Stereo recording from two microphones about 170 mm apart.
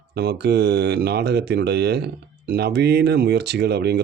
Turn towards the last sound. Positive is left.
turn(degrees=-75)  # may be behind; listen again after turning